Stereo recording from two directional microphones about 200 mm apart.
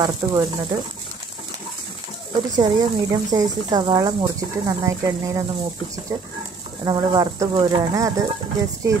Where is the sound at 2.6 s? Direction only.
20° right (ahead or behind).